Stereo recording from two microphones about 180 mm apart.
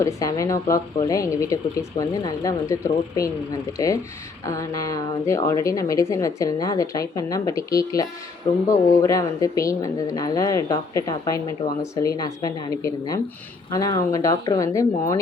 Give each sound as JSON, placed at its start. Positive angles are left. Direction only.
{"t": 0.0, "sound": "a woman's voice", "side_deg": 20}